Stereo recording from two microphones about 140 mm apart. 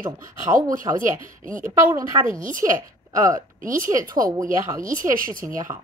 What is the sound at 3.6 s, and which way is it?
Speech, 75° right (ahead or behind).